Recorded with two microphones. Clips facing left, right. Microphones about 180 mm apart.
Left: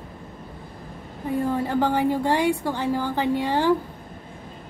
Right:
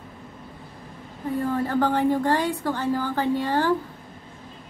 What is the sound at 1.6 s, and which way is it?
Speech, 10° left (ahead or behind).